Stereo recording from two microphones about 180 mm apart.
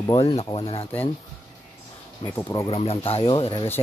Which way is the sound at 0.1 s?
30° left (ahead or behind).